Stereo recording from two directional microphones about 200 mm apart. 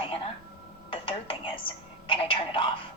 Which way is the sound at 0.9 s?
25° left (ahead or behind).